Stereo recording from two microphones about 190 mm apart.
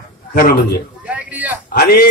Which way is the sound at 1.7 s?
55° left (ahead or behind).